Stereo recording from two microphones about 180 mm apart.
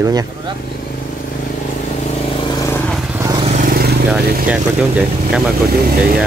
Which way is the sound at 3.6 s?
60° right (ahead or behind).